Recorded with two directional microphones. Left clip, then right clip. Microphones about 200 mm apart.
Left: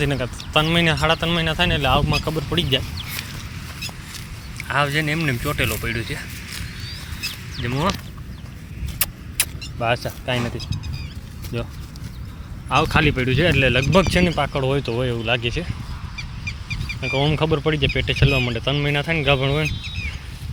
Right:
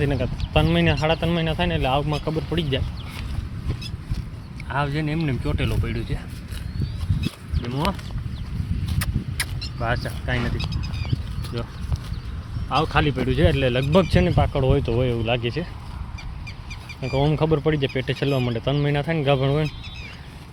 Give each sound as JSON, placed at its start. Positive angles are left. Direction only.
{"t": 0.0, "sound": "speech", "side_deg": -5}
{"t": 4.7, "sound": "speech", "side_deg": 0}
{"t": 9.0, "sound": "vehicle", "side_deg": 20}
{"t": 12.7, "sound": "speech", "side_deg": 10}
{"t": 13.2, "sound": "speech", "side_deg": -5}
{"t": 17.0, "sound": "speech", "side_deg": -5}